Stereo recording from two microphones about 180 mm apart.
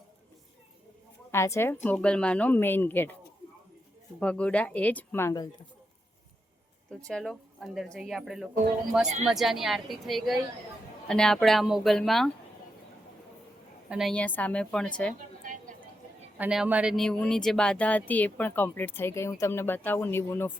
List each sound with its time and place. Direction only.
1.3 s speech: 15° left (ahead or behind)
4.2 s speech: 5° left (ahead or behind)
7.1 s speech: centre (ahead or behind)
13.9 s speech: centre (ahead or behind)
15.4 s a sound: 45° right (ahead or behind)
16.4 s speech: 5° right (ahead or behind); by 20.5 s 15° left (ahead or behind)